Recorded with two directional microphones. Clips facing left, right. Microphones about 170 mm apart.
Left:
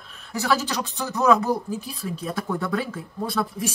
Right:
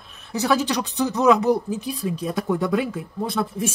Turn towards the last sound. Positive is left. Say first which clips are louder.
# right 2 dB
turn(degrees=-20)  # may be behind; listen again after turning